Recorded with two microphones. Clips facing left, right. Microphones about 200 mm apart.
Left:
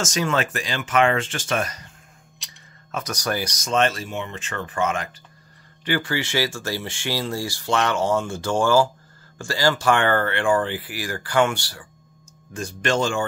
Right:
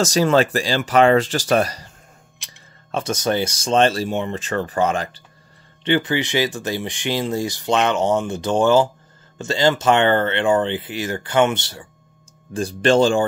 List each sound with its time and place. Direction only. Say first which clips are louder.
0.0 s speech: right 7 dB; 35° right (ahead or behind)
2.9 s speech: right 6 dB; 25° right (ahead or behind)
5.9 s speech: right 5 dB; 20° right (ahead or behind)
12.5 s speech: right 7 dB; 30° right (ahead or behind)